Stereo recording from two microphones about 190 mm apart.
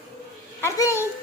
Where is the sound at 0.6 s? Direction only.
15° left (ahead or behind).